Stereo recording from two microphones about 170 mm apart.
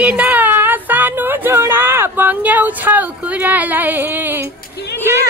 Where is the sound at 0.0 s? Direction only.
10° right (ahead or behind).